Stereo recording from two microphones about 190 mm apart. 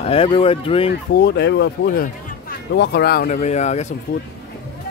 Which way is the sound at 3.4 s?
35° left (ahead or behind).